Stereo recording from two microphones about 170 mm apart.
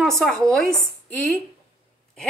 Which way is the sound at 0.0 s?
Centre (ahead or behind).